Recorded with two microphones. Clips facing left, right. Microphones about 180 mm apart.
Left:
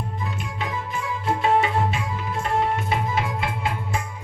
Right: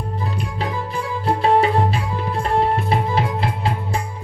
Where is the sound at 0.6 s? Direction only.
35° right (ahead or behind).